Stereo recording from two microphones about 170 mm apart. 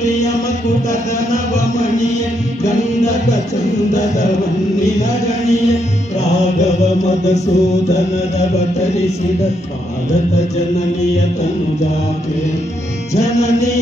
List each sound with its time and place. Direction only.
0.8 s music: 45° left (ahead or behind)
3.9 s music: 45° left (ahead or behind)
5.2 s chant: 40° left (ahead or behind)
6.6 s music: 40° left (ahead or behind)
13.1 s music: 40° left (ahead or behind)